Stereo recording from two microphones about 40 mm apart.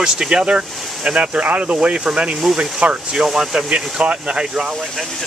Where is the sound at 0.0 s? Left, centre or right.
Centre.